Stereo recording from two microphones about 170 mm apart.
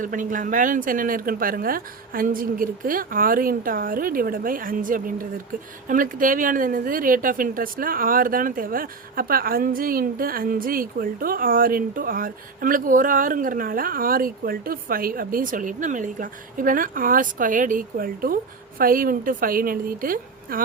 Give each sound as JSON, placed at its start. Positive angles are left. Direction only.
{"t": 0.0, "sound": "speech", "side_deg": -50}